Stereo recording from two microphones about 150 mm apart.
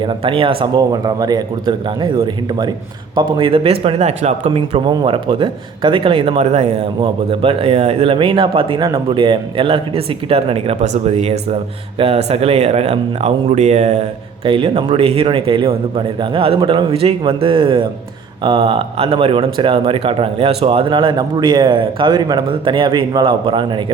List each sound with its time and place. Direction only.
0.0 s speech: 35° right (ahead or behind)
14.4 s speech: 35° right (ahead or behind)